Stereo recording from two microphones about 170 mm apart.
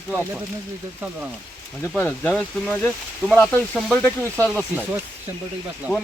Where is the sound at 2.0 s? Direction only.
10° left (ahead or behind).